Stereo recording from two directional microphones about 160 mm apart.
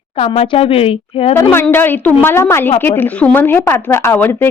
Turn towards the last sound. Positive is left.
turn(degrees=15)  # may be behind; listen again after turning